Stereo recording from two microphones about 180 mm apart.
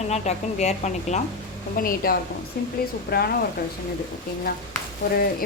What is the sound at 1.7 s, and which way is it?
Speech, 55° left (ahead or behind).